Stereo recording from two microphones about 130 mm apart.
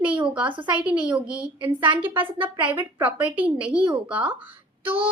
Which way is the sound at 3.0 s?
10° right (ahead or behind).